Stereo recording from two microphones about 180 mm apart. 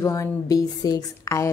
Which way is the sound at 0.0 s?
15° left (ahead or behind).